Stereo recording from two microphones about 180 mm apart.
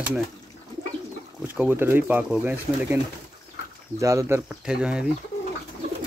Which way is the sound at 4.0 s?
15° right (ahead or behind).